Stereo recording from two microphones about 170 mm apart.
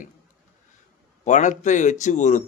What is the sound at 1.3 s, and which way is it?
Speech, 45° left (ahead or behind).